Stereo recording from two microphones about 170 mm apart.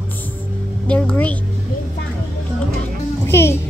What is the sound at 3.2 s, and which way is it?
Music, 15° left (ahead or behind).